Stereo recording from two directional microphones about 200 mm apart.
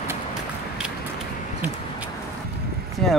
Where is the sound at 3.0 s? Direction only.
Centre (ahead or behind).